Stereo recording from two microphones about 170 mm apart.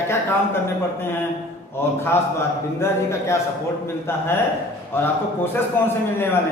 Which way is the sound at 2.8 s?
15° left (ahead or behind).